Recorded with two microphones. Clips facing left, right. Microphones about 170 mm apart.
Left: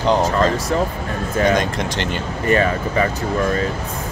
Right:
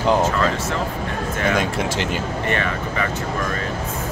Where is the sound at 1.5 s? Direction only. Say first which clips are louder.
Left 2 dB; 5° right (ahead or behind).